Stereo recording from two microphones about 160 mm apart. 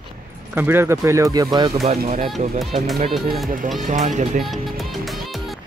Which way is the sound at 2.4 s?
45° right (ahead or behind).